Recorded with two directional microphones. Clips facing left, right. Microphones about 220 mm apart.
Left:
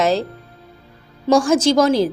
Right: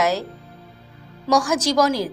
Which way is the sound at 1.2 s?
25° left (ahead or behind).